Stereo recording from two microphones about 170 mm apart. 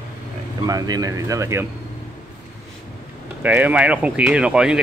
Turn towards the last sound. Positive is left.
turn(degrees=-5)  # may be behind; listen again after turning